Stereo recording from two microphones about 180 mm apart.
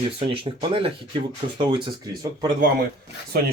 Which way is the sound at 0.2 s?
30° right (ahead or behind).